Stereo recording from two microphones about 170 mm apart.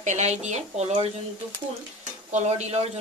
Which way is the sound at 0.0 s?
45° right (ahead or behind).